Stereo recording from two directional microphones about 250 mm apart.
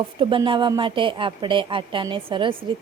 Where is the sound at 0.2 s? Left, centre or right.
Centre.